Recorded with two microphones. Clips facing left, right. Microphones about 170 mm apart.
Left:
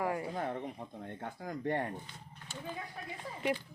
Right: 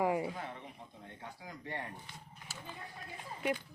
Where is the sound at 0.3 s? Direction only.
50° left (ahead or behind).